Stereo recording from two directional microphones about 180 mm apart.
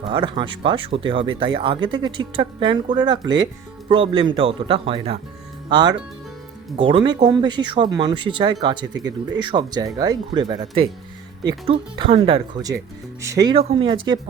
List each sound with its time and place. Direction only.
0.0 s speech: 25° right (ahead or behind)
13.2 s speech: 20° right (ahead or behind)
13.5 s speech: 30° right (ahead or behind)